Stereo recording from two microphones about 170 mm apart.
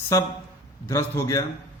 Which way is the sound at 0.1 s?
20° left (ahead or behind).